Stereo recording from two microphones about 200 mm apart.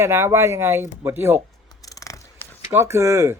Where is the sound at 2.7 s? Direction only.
15° right (ahead or behind).